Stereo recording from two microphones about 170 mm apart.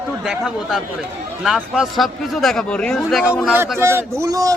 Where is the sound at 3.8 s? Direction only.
15° right (ahead or behind).